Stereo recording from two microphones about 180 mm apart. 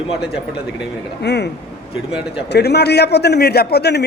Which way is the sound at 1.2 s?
70° left (ahead or behind).